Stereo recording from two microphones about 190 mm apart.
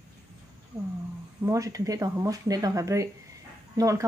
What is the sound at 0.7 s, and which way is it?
Speech, 10° right (ahead or behind).